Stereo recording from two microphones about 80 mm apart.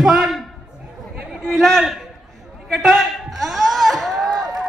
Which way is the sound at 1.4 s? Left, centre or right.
Centre.